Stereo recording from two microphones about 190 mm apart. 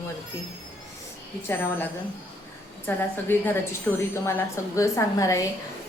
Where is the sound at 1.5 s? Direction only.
15° left (ahead or behind).